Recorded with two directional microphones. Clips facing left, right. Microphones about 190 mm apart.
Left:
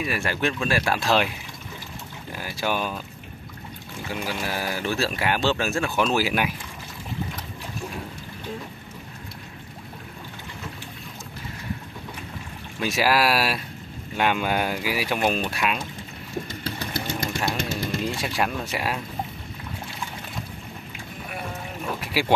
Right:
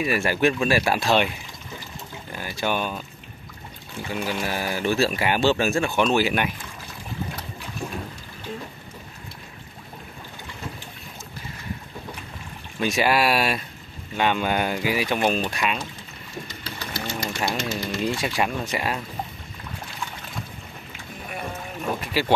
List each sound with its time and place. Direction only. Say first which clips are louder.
0.0 s speech: right 4 dB; 5° right (ahead or behind)
2.3 s speech: right 1 dB; 5° left (ahead or behind)
4.1 s speech: right 2 dB; 5° left (ahead or behind)
12.8 s speech: right 1 dB; centre (ahead or behind)
16.4 s vehicle: left 4 dB; 55° left (ahead or behind)
17.6 s speech: even; 55° left (ahead or behind)
18.2 s speech: right 1 dB; centre (ahead or behind)
22.2 s speech: even; 10° left (ahead or behind)